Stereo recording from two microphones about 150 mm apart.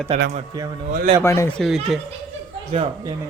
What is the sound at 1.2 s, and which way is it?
Speech, 20° left (ahead or behind).